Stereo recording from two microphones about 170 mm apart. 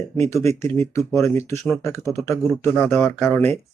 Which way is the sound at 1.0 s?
Centre (ahead or behind).